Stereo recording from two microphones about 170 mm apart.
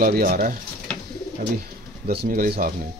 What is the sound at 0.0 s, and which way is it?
Speech, 60° right (ahead or behind).